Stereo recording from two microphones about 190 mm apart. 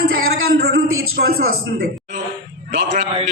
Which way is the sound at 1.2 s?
65° right (ahead or behind).